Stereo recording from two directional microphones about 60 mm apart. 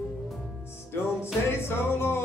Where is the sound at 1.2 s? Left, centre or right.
Left.